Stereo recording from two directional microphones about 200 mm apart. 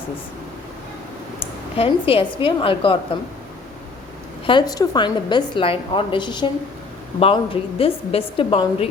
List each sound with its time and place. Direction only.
1.7 s a woman's voice: 30° left (ahead or behind)
4.4 s a woman's voice: 20° left (ahead or behind)